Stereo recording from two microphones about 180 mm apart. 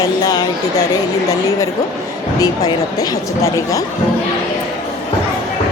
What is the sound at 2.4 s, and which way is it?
Speech, 20° left (ahead or behind).